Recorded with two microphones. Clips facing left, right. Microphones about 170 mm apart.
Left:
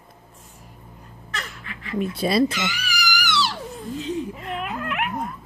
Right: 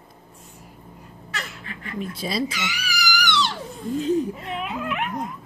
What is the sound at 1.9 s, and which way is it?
Speech, 60° left (ahead or behind).